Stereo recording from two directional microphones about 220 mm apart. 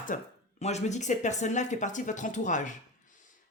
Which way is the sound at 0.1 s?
35° left (ahead or behind).